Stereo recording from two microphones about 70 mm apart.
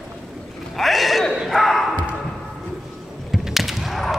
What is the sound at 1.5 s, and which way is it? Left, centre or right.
Basketball bounce, centre.